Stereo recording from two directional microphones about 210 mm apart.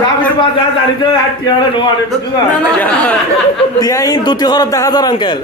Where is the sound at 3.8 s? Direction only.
15° left (ahead or behind).